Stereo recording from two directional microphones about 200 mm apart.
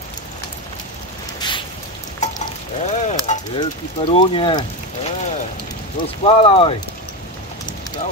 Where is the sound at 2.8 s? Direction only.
35° left (ahead or behind).